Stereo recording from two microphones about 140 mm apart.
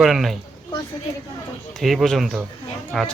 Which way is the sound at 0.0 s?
Centre (ahead or behind).